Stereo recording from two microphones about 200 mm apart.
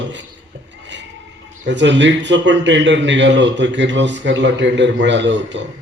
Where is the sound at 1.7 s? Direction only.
65° right (ahead or behind).